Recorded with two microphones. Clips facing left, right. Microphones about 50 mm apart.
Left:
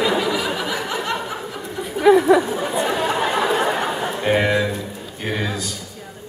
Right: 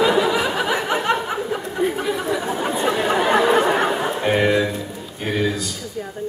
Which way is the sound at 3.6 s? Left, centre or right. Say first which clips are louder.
Right 3 dB; right.